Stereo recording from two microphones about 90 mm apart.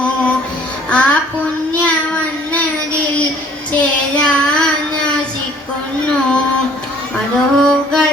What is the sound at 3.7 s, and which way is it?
Child singing, 15° left (ahead or behind).